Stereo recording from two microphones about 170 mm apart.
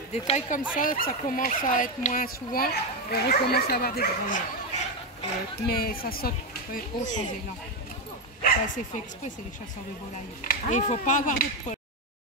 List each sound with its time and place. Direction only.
0.1 s speech: 45° left (ahead or behind)
0.7 s speech: 55° left (ahead or behind)
5.6 s speech: 60° left (ahead or behind)
8.4 s speech: 50° left (ahead or behind)
10.4 s speech: 50° left (ahead or behind)